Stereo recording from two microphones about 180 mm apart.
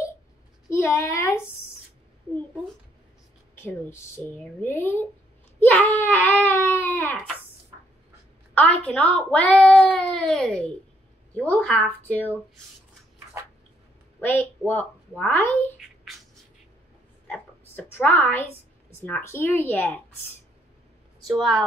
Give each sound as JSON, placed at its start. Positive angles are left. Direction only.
{"t": 0.7, "sound": "a woman's voice", "side_deg": 15}
{"t": 3.5, "sound": "speech", "side_deg": 15}
{"t": 8.7, "sound": "speech", "side_deg": 5}
{"t": 14.2, "sound": "speech", "side_deg": 10}
{"t": 17.3, "sound": "a woman's voice", "side_deg": 10}
{"t": 21.3, "sound": "a woman's voice", "side_deg": 0}